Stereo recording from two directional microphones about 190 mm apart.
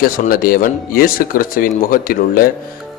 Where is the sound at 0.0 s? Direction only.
50° left (ahead or behind).